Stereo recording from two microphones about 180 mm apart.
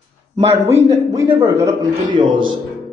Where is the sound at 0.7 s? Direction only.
15° right (ahead or behind).